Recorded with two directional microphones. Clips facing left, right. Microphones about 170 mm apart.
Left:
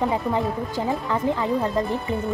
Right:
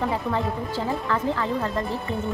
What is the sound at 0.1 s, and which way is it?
Speech, 15° left (ahead or behind).